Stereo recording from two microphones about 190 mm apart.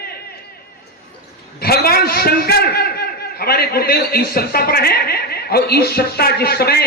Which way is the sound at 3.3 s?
55° left (ahead or behind).